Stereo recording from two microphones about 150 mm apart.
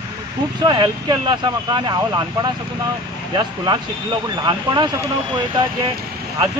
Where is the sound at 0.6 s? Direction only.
30° right (ahead or behind).